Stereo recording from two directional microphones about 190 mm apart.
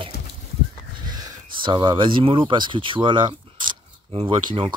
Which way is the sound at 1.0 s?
20° right (ahead or behind).